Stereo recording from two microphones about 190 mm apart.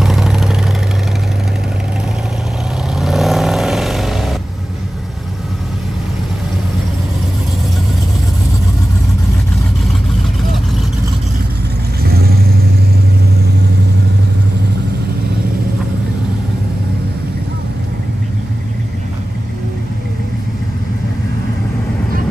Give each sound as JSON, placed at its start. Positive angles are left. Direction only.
{"t": 0.0, "sound": "vehicle", "side_deg": 0}
{"t": 2.9, "sound": "vehicle", "side_deg": 0}
{"t": 12.0, "sound": "vehicle", "side_deg": -55}